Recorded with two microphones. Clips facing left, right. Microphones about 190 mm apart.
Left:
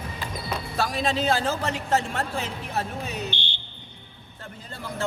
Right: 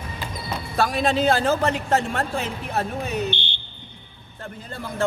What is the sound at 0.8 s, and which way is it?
A man's voice, 55° right (ahead or behind).